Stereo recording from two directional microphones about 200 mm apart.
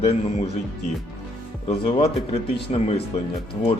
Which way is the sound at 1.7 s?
30° left (ahead or behind).